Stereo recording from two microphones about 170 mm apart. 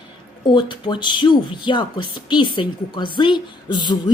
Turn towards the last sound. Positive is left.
turn(degrees=25)  # may be behind; listen again after turning